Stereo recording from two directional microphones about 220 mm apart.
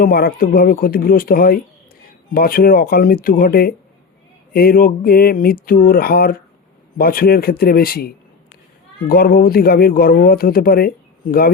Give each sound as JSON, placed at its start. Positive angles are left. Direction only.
{"t": 0.0, "sound": "speech", "side_deg": 45}